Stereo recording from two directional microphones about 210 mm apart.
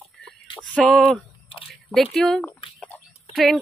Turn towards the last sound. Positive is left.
turn(degrees=5)  # may be behind; listen again after turning